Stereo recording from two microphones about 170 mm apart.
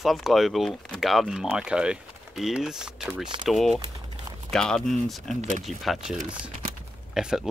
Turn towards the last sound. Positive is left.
turn(degrees=-5)  # may be behind; listen again after turning